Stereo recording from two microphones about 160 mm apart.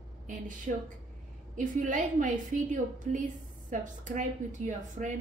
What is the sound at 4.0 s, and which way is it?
A woman's voice, 50° right (ahead or behind).